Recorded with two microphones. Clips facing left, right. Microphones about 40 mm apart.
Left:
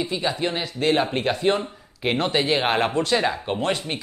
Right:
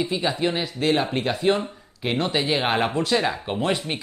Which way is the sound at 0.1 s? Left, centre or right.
Centre.